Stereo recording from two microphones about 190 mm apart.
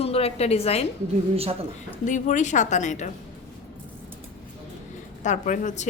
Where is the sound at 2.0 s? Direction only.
40° left (ahead or behind).